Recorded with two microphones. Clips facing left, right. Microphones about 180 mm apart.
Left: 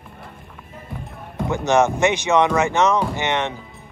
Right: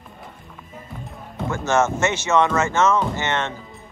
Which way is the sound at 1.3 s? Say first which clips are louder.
Left 3 dB; 15° left (ahead or behind).